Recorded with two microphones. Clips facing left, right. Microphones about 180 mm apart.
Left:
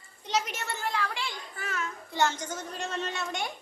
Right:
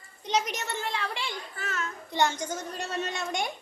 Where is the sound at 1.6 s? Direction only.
10° left (ahead or behind).